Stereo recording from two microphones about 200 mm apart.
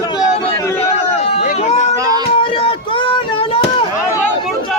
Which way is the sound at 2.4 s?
25° left (ahead or behind).